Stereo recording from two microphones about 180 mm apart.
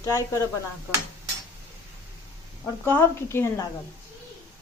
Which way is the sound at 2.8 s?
10° left (ahead or behind).